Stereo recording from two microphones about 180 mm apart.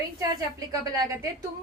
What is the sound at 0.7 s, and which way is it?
Speech, 20° right (ahead or behind).